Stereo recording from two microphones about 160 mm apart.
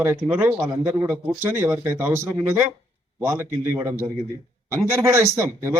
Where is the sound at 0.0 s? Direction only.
15° right (ahead or behind).